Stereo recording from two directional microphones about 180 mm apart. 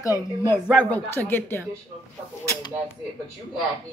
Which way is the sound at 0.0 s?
15° left (ahead or behind).